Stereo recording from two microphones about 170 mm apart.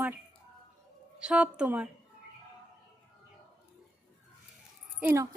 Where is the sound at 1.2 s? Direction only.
5° right (ahead or behind).